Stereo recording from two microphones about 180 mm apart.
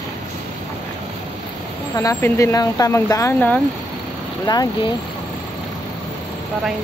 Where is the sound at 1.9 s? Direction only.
15° left (ahead or behind).